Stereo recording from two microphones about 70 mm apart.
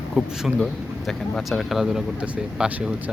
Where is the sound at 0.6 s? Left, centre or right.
Centre.